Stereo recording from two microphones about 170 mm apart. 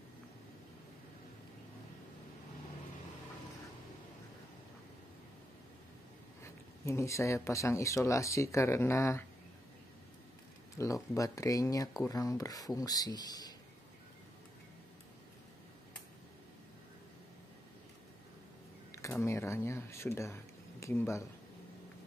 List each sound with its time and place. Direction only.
6.4 s speech: 15° left (ahead or behind)
10.8 s speech: 20° left (ahead or behind)
18.9 s a sound: 20° left (ahead or behind)
19.2 s speech: 15° left (ahead or behind)